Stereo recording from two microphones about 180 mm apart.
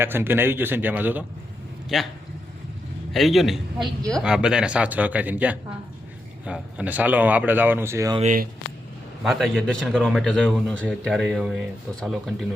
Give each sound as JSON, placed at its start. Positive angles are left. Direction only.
{"t": 0.0, "sound": "speech", "side_deg": -10}
{"t": 3.1, "sound": "speech", "side_deg": 0}
{"t": 8.2, "sound": "speech", "side_deg": -45}
{"t": 9.2, "sound": "speech", "side_deg": 0}